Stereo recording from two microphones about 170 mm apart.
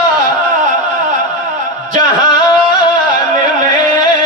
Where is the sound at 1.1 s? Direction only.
45° right (ahead or behind).